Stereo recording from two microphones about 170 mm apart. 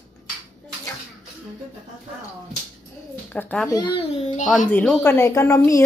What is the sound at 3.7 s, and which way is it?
Speech, 25° left (ahead or behind).